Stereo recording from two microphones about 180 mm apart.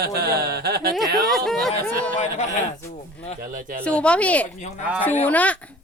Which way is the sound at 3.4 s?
50° right (ahead or behind).